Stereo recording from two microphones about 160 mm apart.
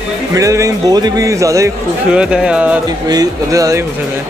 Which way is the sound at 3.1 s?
20° right (ahead or behind).